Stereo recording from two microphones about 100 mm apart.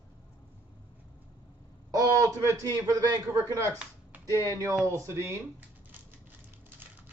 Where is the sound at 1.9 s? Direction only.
30° right (ahead or behind).